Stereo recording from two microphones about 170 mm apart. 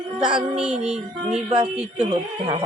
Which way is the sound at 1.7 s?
5° right (ahead or behind).